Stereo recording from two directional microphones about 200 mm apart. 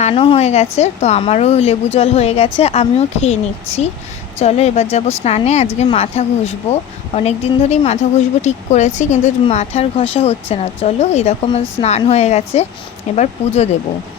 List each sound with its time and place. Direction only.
0.0 s speech: 25° left (ahead or behind)
4.4 s speech: 30° left (ahead or behind)